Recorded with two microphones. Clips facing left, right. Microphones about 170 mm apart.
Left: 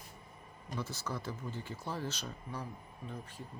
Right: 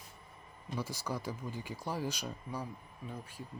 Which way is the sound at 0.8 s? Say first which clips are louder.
Right 2 dB; 10° right (ahead or behind).